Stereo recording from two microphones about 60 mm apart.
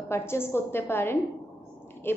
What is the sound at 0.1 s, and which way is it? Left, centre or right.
A woman's voice, left.